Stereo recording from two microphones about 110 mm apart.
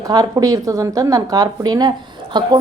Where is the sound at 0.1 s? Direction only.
35° right (ahead or behind).